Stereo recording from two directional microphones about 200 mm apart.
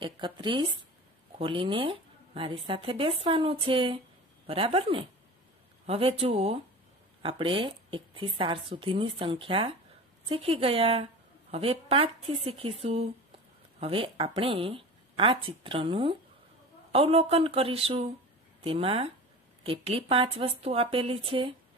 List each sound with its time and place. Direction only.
0.0 s speech: 25° right (ahead or behind)